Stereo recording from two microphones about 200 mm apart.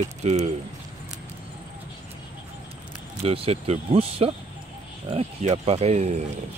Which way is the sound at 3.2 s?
30° right (ahead or behind).